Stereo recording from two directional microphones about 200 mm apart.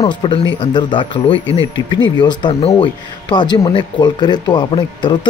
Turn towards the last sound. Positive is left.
turn(degrees=20)  # may be behind; listen again after turning